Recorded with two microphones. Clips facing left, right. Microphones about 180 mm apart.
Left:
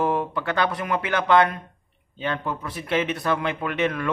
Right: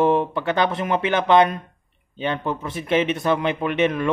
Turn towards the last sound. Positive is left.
turn(degrees=-20)  # may be behind; listen again after turning